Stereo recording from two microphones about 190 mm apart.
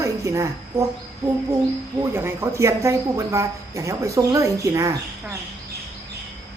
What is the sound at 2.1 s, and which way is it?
Speech, 15° right (ahead or behind).